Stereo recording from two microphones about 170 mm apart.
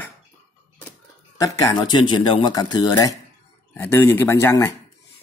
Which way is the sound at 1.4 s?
25° left (ahead or behind).